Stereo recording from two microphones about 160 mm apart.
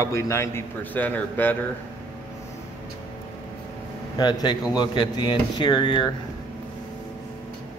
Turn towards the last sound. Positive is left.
turn(degrees=30)  # may be behind; listen again after turning